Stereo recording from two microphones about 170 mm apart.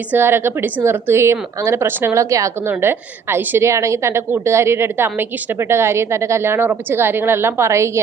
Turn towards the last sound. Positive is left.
turn(degrees=-15)  # may be behind; listen again after turning